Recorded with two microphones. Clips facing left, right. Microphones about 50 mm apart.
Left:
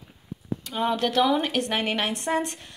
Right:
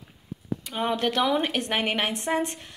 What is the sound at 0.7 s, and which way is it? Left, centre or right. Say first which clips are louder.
A woman's voice: left 1 dB; right.